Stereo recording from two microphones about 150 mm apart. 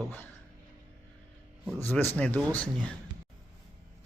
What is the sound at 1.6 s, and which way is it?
Speech, 15° left (ahead or behind).